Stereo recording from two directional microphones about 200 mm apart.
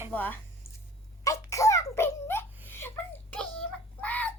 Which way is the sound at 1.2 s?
15° left (ahead or behind).